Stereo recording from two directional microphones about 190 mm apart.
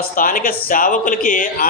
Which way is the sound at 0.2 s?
45° left (ahead or behind).